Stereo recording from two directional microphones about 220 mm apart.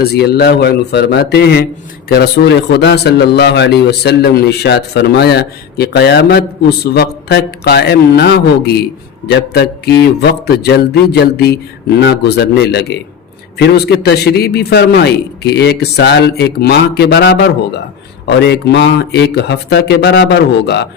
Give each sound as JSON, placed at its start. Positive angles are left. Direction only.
{"t": 0.0, "sound": "a man's voice", "side_deg": 45}